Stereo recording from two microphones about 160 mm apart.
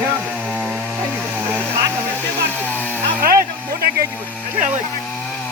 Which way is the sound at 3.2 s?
65° right (ahead or behind).